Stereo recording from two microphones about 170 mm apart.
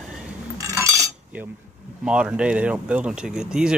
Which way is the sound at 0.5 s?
15° right (ahead or behind).